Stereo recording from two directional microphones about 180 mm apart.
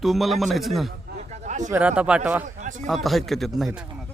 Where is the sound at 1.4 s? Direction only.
40° right (ahead or behind).